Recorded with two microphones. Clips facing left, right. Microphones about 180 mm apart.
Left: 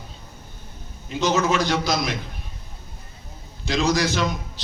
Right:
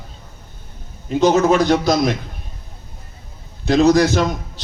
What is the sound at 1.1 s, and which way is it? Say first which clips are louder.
A man's voice: right 7 dB; 55° right (ahead or behind).